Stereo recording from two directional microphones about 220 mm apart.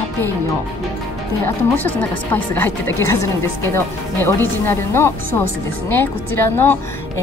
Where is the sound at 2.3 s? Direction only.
10° left (ahead or behind).